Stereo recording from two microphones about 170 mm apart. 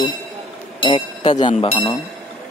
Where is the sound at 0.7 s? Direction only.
30° left (ahead or behind).